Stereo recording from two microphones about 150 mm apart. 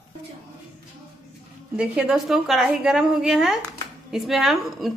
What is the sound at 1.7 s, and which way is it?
Stir, 5° right (ahead or behind).